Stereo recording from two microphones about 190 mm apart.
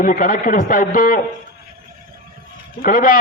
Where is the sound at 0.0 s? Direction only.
45° left (ahead or behind).